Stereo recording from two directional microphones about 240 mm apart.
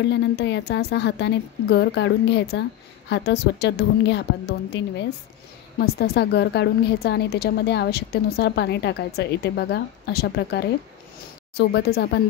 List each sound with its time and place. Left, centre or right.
0.0 s a woman's voice: left